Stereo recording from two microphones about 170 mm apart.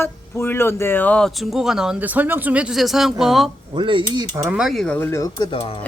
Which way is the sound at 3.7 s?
30° right (ahead or behind).